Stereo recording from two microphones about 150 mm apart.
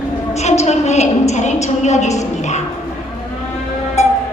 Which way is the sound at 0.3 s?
50° left (ahead or behind).